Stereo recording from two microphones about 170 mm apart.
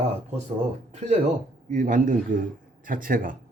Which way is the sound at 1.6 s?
50° right (ahead or behind).